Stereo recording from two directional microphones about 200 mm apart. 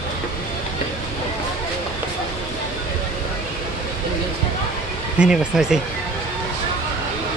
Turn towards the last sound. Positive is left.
turn(degrees=-5)  # may be behind; listen again after turning